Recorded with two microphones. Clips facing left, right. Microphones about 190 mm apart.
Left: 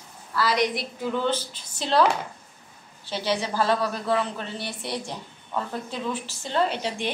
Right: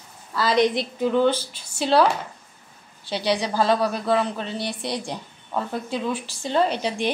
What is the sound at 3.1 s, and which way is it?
A woman's voice, 15° right (ahead or behind).